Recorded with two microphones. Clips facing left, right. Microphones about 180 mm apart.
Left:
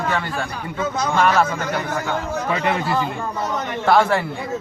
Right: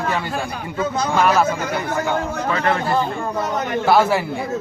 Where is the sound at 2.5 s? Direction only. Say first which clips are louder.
Right 2 dB; 15° left (ahead or behind).